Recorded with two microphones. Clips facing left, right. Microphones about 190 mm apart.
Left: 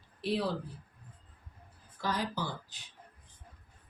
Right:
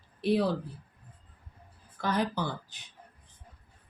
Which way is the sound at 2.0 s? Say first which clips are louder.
Right 5 dB; 60° right (ahead or behind).